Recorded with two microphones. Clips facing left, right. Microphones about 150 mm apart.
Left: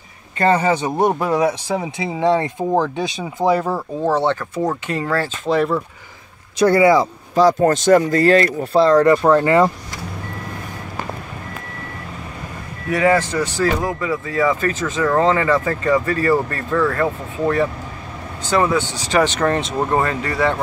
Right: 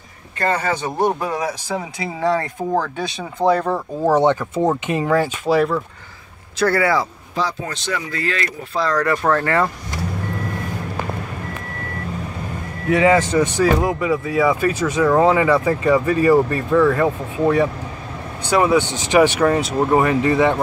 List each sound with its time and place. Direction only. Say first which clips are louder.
0.9 s speech: left 3 dB; 25° left (ahead or behind)
3.3 s speech: even; 5° left (ahead or behind)
4.0 s speech: right 3 dB; 15° right (ahead or behind)
5.5 s speech: even; centre (ahead or behind)
6.6 s speech: left 5 dB; 20° left (ahead or behind)
7.3 s speech: left 11 dB; 45° left (ahead or behind)
8.7 s speech: left 7 dB; 25° left (ahead or behind)
12.9 s speech: right 2 dB; 20° right (ahead or behind)